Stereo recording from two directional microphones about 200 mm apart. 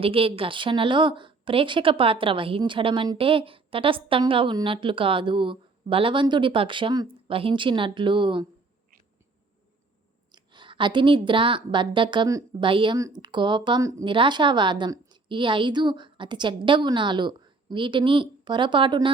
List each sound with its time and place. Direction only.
0.0 s a woman's voice: 25° right (ahead or behind)
10.3 s a woman's voice: 25° right (ahead or behind)